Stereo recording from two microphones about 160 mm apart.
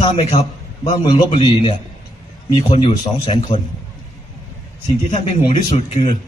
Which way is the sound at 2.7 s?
30° left (ahead or behind).